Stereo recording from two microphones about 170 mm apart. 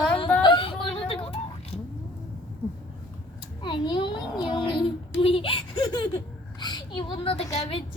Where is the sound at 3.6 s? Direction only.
25° left (ahead or behind).